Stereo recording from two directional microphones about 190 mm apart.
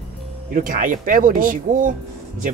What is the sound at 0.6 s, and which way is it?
Speech, 45° right (ahead or behind).